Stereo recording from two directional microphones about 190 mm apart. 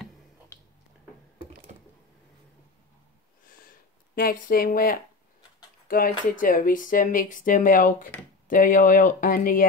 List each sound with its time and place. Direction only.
4.1 s speech: 50° left (ahead or behind)
8.1 s speech: 10° left (ahead or behind)
8.5 s speech: 45° left (ahead or behind)